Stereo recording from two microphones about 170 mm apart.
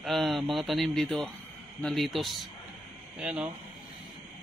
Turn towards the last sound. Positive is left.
turn(degrees=-5)  # may be behind; listen again after turning